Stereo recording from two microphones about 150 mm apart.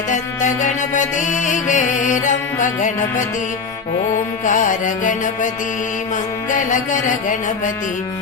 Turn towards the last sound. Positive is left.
turn(degrees=60)  # may be behind; listen again after turning